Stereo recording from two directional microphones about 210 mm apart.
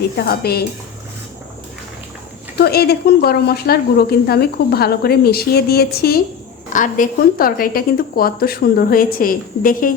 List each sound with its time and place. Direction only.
0.2 s speech: 50° left (ahead or behind)
2.6 s speech: 50° left (ahead or behind)